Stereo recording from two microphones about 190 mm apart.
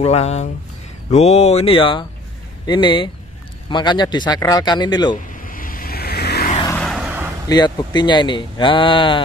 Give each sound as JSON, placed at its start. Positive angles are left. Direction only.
{"t": 0.0, "sound": "speech", "side_deg": 35}
{"t": 5.1, "sound": "vehicle", "side_deg": 45}
{"t": 6.8, "sound": "vehicle", "side_deg": 0}
{"t": 7.4, "sound": "speech", "side_deg": 20}